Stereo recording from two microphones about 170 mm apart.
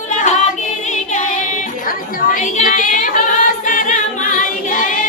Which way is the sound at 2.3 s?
50° left (ahead or behind).